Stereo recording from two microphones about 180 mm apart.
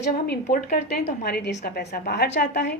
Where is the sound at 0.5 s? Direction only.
60° left (ahead or behind).